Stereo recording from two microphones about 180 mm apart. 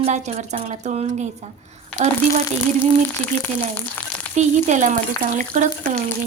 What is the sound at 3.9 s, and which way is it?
Frying, 10° left (ahead or behind).